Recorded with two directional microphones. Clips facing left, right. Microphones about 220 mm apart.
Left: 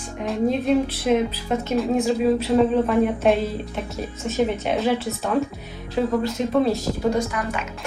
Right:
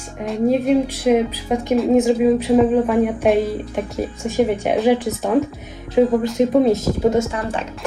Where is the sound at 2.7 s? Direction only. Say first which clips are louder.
Right 3 dB; 5° right (ahead or behind).